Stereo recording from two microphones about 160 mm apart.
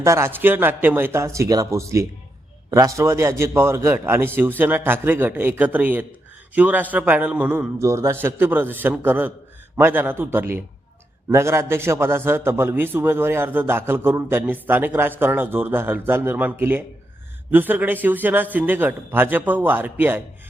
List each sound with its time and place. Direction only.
0.0 s a man's voice: 15° right (ahead or behind)